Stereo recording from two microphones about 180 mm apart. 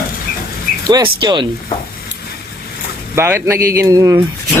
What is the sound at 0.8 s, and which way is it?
Speech, 25° right (ahead or behind).